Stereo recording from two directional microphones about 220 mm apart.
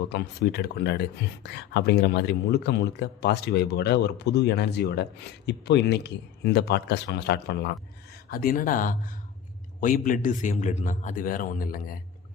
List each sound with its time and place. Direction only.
0.1 s a man's voice: 50° left (ahead or behind)